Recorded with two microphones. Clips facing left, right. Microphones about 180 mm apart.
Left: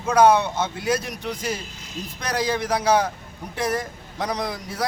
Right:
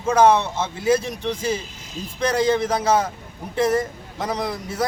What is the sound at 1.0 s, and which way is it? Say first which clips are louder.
Speech: right 4 dB; 25° right (ahead or behind).